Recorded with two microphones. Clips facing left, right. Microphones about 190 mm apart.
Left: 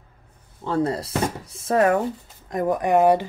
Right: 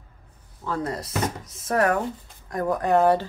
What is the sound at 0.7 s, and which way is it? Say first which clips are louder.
Speech: left 5 dB; 30° left (ahead or behind).